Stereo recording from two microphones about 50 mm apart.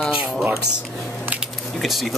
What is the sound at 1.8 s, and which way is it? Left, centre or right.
Speech, centre.